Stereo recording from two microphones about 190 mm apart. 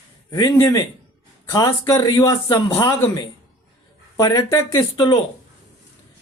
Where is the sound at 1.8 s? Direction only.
20° left (ahead or behind).